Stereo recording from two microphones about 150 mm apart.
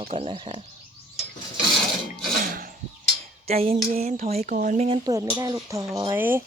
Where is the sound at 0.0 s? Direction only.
45° right (ahead or behind).